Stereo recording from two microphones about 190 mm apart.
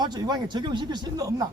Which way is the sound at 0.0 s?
20° right (ahead or behind).